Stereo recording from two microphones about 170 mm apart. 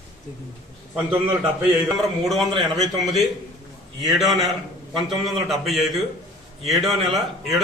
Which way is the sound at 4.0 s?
Centre (ahead or behind).